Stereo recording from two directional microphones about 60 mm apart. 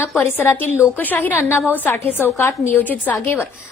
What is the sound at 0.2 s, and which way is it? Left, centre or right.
A woman's voice, left.